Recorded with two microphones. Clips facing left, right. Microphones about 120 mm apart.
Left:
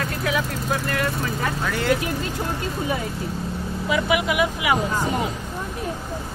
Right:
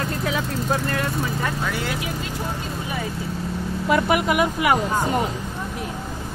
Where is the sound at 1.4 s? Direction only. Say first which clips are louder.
Left 1 dB; centre (ahead or behind).